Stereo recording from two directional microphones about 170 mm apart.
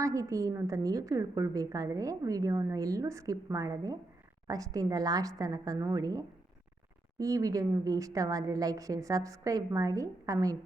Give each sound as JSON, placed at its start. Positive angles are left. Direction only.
{"t": 0.0, "sound": "a woman's voice", "side_deg": -20}